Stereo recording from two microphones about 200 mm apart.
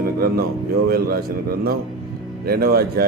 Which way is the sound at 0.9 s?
50° right (ahead or behind).